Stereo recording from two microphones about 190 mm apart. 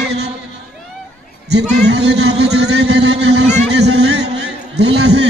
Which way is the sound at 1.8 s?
65° right (ahead or behind).